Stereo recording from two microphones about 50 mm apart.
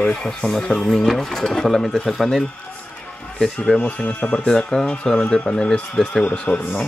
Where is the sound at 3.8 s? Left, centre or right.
Left.